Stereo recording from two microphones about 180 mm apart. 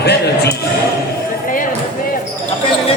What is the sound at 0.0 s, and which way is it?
Music, 65° left (ahead or behind).